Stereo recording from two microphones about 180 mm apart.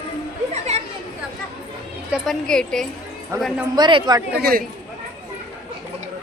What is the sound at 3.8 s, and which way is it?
Speech, 25° right (ahead or behind).